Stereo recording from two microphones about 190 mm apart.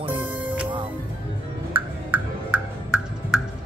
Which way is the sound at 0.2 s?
10° right (ahead or behind).